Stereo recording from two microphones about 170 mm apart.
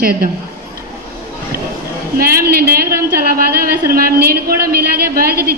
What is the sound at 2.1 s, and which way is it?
Speech, 60° right (ahead or behind).